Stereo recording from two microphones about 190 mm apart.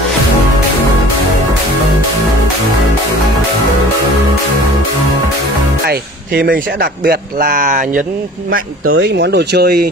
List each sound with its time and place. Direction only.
5.9 s speech: 55° right (ahead or behind)
8.9 s speech: 65° right (ahead or behind)